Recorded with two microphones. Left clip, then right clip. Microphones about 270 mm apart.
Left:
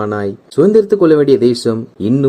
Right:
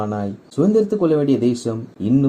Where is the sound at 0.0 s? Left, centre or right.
Left.